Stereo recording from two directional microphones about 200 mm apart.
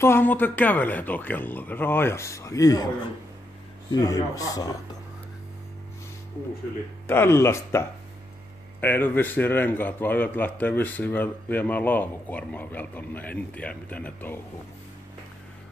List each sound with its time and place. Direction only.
0.0 s a man's voice: 10° left (ahead or behind)
3.9 s a man's voice: 15° left (ahead or behind)
7.1 s a man's voice: 10° left (ahead or behind)
8.8 s a man's voice: 10° left (ahead or behind)